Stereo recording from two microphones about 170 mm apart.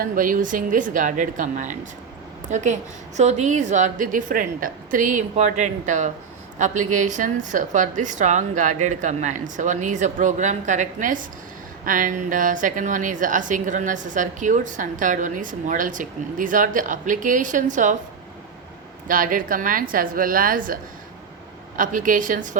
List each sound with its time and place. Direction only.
0.0 s a woman's voice: 55° right (ahead or behind)
19.0 s a woman's voice: 55° right (ahead or behind)
21.8 s a woman's voice: 50° right (ahead or behind)